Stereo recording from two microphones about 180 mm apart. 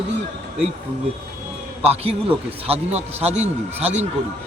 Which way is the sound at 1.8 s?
35° right (ahead or behind).